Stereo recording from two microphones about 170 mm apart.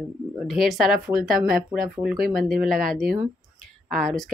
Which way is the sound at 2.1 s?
60° right (ahead or behind).